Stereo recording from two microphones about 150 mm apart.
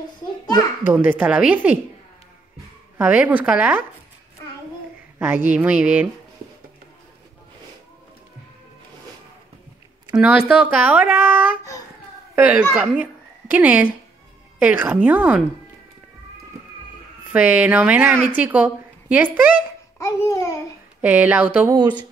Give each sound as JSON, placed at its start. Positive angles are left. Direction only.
{"t": 0.8, "sound": "speech", "side_deg": -15}
{"t": 3.0, "sound": "speech", "side_deg": -10}
{"t": 5.6, "sound": "speech", "side_deg": -10}
{"t": 10.1, "sound": "speech", "side_deg": -5}
{"t": 17.3, "sound": "a woman's voice", "side_deg": -10}
{"t": 20.0, "sound": "babbling", "side_deg": 20}
{"t": 21.0, "sound": "speech", "side_deg": -10}
{"t": 21.7, "sound": "speech", "side_deg": -30}